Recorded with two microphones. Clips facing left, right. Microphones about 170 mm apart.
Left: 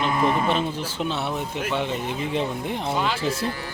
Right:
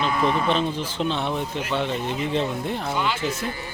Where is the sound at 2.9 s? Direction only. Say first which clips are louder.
Left 2 dB; 30° left (ahead or behind).